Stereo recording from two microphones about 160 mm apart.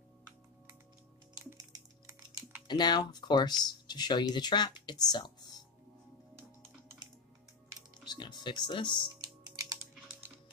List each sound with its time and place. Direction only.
1.4 s music: 20° right (ahead or behind)
2.7 s speech: 25° left (ahead or behind)
8.0 s speech: 30° left (ahead or behind)
9.1 s typing: 25° right (ahead or behind)